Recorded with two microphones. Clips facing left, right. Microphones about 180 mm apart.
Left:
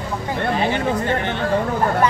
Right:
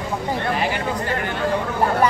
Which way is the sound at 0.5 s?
25° left (ahead or behind).